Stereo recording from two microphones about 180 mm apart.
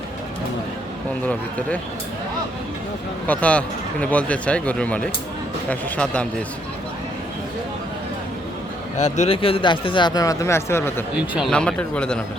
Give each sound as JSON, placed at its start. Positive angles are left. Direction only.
{"t": 1.2, "sound": "speech", "side_deg": 5}
{"t": 3.2, "sound": "speech", "side_deg": 5}
{"t": 9.0, "sound": "speech", "side_deg": 40}
{"t": 11.3, "sound": "speech", "side_deg": 0}